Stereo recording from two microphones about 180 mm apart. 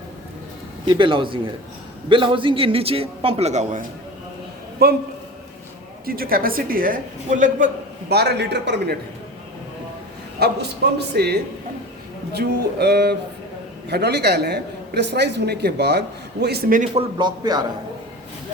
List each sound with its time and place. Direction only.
0.9 s a man's voice: 25° right (ahead or behind)
4.8 s a man's voice: 60° right (ahead or behind)
6.1 s a woman's voice: 55° right (ahead or behind)
8.1 s a woman's voice: 65° right (ahead or behind)
10.4 s a man's voice: 70° right (ahead or behind); by 17.0 s 45° right (ahead or behind)
17.2 s speech: 25° right (ahead or behind)